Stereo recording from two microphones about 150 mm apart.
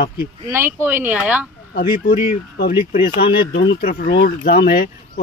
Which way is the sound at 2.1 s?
40° left (ahead or behind).